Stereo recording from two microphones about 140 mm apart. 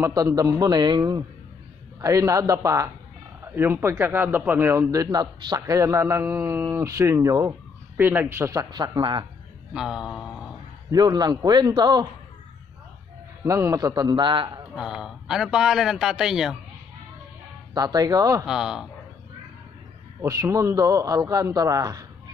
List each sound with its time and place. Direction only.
0.0 s a man's voice: 25° right (ahead or behind)
9.8 s a man's voice: 5° right (ahead or behind)
10.9 s a man's voice: 30° right (ahead or behind)
13.4 s a man's voice: 20° right (ahead or behind)
14.8 s a man's voice: 5° right (ahead or behind)
17.7 s a man's voice: 25° right (ahead or behind)
18.4 s a man's voice: 5° right (ahead or behind)
20.2 s a man's voice: 25° right (ahead or behind)